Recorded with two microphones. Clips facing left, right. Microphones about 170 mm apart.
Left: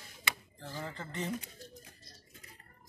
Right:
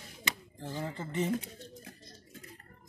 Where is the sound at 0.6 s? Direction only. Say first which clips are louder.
Right 4 dB; 15° right (ahead or behind).